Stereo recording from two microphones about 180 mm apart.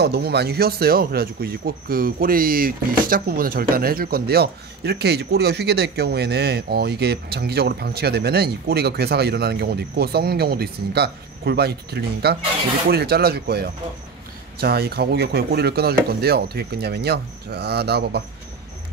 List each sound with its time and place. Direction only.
0.0 s speech: 65° right (ahead or behind)